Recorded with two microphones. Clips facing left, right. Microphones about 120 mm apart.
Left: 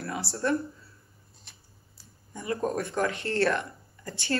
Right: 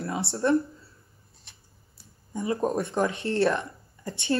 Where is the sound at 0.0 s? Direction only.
25° right (ahead or behind).